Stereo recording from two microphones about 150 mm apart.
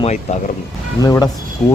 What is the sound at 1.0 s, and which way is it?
Speech, 25° left (ahead or behind).